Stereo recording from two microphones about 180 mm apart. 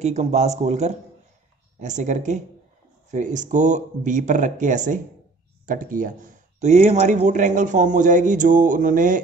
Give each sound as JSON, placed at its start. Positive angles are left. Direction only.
{"t": 0.0, "sound": "speech", "side_deg": -40}